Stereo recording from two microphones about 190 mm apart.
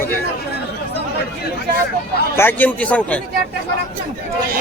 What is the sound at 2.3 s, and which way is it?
Speech, 10° left (ahead or behind).